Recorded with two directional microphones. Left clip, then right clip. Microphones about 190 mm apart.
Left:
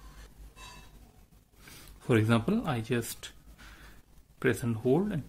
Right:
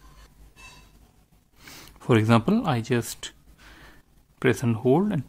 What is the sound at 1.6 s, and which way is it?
Speech, 35° right (ahead or behind).